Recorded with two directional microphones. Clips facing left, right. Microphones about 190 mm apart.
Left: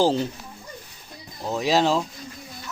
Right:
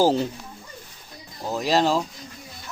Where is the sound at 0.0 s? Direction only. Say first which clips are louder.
Right 1 dB; 15° right (ahead or behind).